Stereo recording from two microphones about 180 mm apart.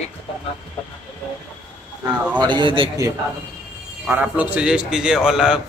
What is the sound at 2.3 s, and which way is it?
Speech, 25° right (ahead or behind).